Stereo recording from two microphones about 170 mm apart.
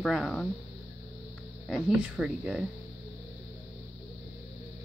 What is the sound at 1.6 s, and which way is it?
Speech, 5° right (ahead or behind).